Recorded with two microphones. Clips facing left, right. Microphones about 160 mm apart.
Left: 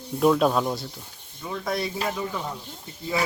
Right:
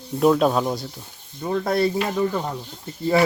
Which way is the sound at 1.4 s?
50° right (ahead or behind).